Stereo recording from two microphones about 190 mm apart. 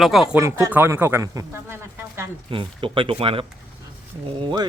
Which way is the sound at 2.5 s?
25° right (ahead or behind).